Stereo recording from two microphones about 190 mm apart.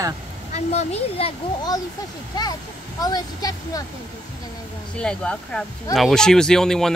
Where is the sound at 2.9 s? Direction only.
20° left (ahead or behind).